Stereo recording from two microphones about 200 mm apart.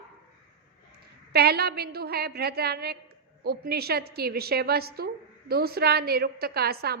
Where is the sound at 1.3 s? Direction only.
50° right (ahead or behind).